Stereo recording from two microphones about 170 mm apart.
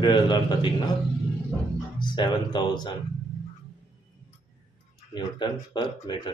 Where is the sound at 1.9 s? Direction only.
25° left (ahead or behind).